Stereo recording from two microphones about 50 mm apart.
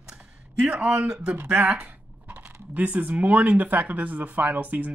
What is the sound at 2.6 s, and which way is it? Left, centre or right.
Speech, right.